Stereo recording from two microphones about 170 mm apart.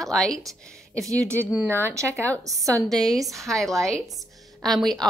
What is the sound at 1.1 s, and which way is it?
A woman's voice, 15° right (ahead or behind).